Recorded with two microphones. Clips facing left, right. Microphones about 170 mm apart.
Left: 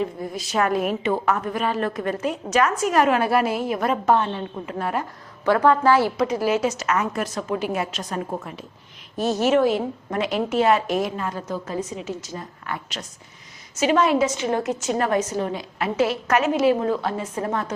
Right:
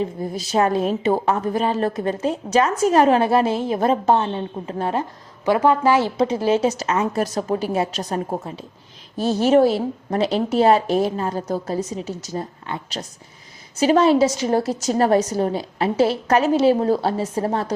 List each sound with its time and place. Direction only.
0.0 s a woman's voice: 30° right (ahead or behind)
5.5 s a woman's voice: 15° right (ahead or behind); by 17.7 s 30° right (ahead or behind)